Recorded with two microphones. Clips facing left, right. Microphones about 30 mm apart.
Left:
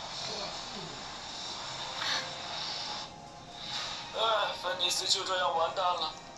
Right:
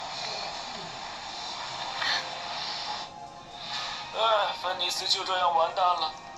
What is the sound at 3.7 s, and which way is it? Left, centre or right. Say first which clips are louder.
A man's voice: right 4 dB; centre.